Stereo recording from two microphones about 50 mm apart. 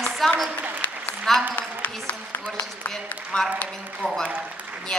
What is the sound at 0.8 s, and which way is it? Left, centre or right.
Applause, left.